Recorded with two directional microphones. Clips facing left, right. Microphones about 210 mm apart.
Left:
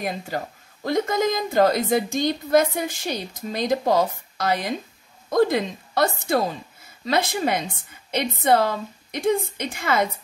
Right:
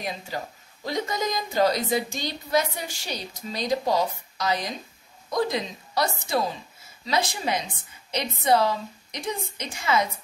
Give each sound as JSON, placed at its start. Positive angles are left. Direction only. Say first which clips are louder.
{"t": 0.8, "sound": "a woman's voice", "louder": "left 6 dB", "side_deg": 50}